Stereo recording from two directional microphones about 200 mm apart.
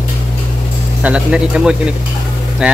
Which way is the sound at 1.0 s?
5° right (ahead or behind).